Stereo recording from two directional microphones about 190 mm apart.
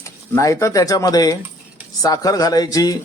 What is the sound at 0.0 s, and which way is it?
Speech, 15° left (ahead or behind).